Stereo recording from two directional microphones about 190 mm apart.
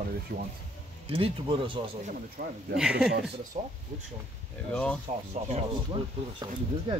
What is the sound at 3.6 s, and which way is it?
Speech, 35° right (ahead or behind).